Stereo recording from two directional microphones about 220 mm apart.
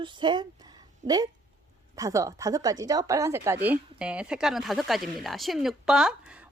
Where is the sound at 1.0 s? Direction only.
30° right (ahead or behind).